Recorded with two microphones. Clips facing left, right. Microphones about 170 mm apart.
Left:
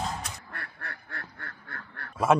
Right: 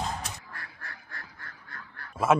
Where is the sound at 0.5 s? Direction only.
60° left (ahead or behind).